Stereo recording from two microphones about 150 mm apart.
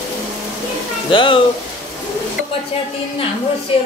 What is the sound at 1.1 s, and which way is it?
Speech, 30° left (ahead or behind).